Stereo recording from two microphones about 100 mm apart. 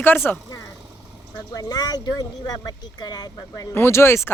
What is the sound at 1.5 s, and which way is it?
Speech, 40° left (ahead or behind).